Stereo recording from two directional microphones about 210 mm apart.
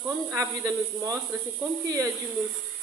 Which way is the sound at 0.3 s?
10° right (ahead or behind).